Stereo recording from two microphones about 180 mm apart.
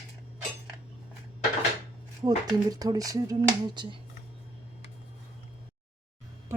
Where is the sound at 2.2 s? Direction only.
20° right (ahead or behind).